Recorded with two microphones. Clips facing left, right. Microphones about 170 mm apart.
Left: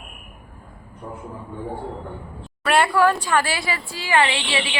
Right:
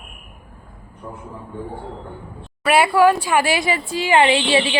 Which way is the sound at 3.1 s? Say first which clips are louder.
Right 4 dB; 10° right (ahead or behind).